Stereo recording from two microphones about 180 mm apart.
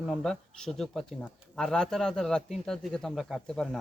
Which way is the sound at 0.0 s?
Centre (ahead or behind).